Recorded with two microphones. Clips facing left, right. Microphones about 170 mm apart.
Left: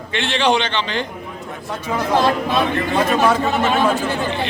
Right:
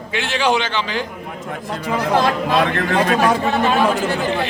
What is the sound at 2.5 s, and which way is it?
Speech, 85° right.